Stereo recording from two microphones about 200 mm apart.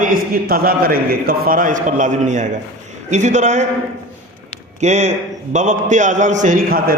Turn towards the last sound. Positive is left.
turn(degrees=-45)  # may be behind; listen again after turning